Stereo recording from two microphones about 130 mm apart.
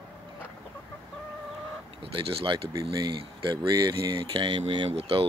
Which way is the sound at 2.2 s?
40° right (ahead or behind).